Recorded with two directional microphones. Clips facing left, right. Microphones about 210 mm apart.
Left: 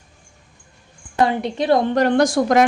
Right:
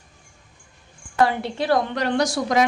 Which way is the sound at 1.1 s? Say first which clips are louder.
Left 2 dB; 20° left (ahead or behind).